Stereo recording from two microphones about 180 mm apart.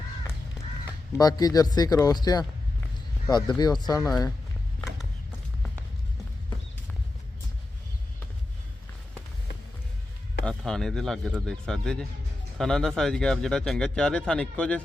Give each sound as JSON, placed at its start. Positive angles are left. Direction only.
{"t": 1.2, "sound": "speech", "side_deg": 20}
{"t": 10.4, "sound": "speech", "side_deg": 5}